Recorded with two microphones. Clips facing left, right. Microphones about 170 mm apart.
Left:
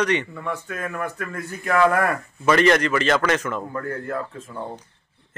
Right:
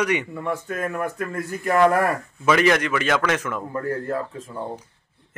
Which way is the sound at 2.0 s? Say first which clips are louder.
Even; 5° right (ahead or behind).